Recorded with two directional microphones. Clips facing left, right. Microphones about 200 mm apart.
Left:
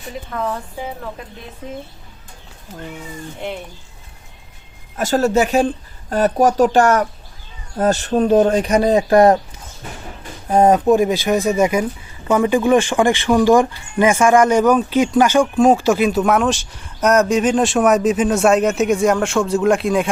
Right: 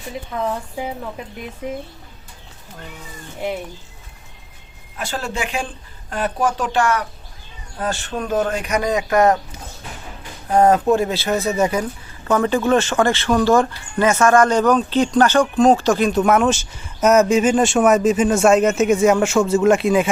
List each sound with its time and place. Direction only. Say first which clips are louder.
4.9 s speech: left 10 dB; 40° left (ahead or behind)
10.5 s speech: left 2 dB; 20° left (ahead or behind); by 20.1 s centre (ahead or behind)